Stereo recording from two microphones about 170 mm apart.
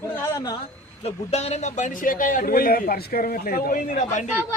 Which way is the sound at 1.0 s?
40° left (ahead or behind).